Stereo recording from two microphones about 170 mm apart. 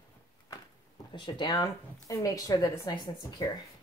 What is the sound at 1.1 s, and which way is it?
Speech, 25° left (ahead or behind).